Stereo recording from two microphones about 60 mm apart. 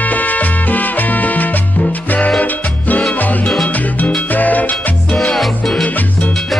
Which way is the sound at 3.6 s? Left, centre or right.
Left.